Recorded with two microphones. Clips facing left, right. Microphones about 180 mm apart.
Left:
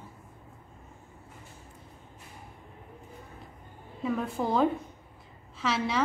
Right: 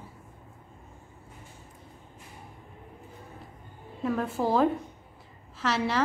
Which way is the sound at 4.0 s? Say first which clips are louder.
Right 2 dB; centre (ahead or behind).